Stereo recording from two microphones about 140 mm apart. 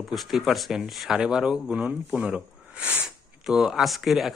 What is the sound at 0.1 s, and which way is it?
Speech, centre (ahead or behind).